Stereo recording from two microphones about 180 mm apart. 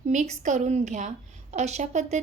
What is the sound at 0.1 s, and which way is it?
A woman's voice, 40° right (ahead or behind).